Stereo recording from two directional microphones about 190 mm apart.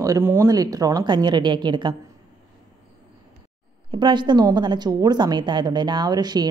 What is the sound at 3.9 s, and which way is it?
A woman's voice, 25° right (ahead or behind).